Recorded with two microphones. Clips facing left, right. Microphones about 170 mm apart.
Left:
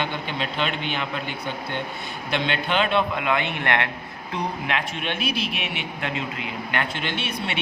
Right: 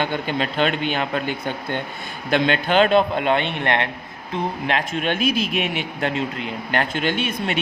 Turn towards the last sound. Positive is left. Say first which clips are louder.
# right 5 dB
turn(degrees=-45)  # may be behind; listen again after turning